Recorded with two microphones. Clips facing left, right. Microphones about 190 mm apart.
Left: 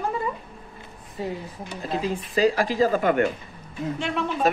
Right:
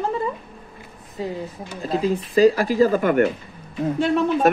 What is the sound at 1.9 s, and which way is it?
Speech, 40° right (ahead or behind).